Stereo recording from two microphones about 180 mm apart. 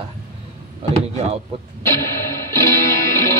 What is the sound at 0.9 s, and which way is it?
Speech, 35° right (ahead or behind).